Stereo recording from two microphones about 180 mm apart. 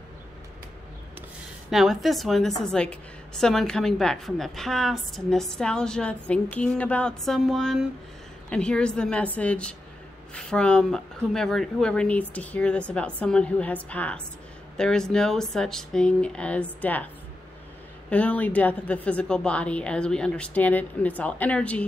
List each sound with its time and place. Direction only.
1.7 s a woman's voice: centre (ahead or behind)
18.1 s a woman's voice: 10° left (ahead or behind)